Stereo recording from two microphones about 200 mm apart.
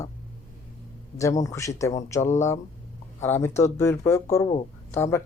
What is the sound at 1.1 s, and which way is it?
Speech, 15° left (ahead or behind).